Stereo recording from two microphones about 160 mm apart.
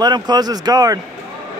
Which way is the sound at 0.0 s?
25° right (ahead or behind).